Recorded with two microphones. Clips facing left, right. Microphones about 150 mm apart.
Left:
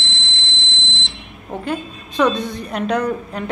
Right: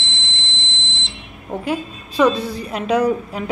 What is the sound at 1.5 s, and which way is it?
A woman's voice, 5° right (ahead or behind).